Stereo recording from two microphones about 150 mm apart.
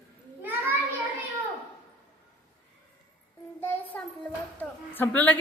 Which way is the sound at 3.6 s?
10° left (ahead or behind).